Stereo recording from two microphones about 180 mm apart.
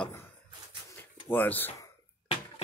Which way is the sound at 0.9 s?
10° left (ahead or behind).